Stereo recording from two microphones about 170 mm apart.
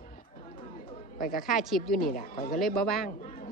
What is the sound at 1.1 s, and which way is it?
Speech, 55° left (ahead or behind).